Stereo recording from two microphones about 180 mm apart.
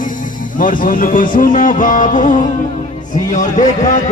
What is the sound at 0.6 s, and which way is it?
A man's voice, 50° left (ahead or behind).